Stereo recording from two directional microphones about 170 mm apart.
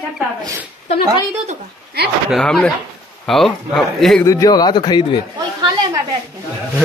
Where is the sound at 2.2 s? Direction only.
Centre (ahead or behind).